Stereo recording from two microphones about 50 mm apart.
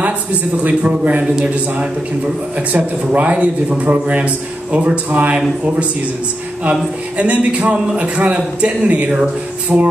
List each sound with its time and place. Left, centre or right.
0.0 s speech: right